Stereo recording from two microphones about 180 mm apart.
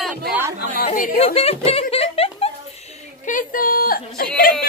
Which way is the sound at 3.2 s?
50° left (ahead or behind).